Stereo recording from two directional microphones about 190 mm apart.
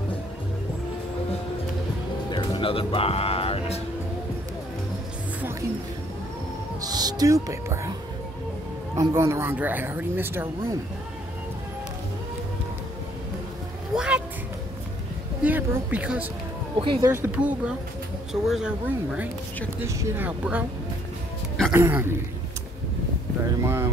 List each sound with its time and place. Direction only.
2.3 s music: 25° left (ahead or behind)
6.8 s music: 20° right (ahead or behind)
8.9 s speech: 15° right (ahead or behind)
13.9 s a sound: 5° right (ahead or behind)
15.4 s speech: 10° right (ahead or behind)
16.7 s speech: 25° right (ahead or behind)
17.1 s speech: 10° right (ahead or behind)
21.7 s speech: 10° right (ahead or behind)
23.6 s speech: 15° right (ahead or behind)